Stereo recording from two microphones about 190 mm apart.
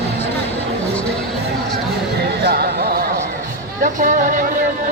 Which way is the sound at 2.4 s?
55° right (ahead or behind).